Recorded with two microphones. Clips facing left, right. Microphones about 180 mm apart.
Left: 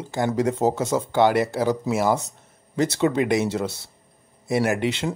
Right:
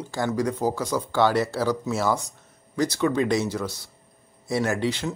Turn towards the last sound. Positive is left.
turn(degrees=25)  # may be behind; listen again after turning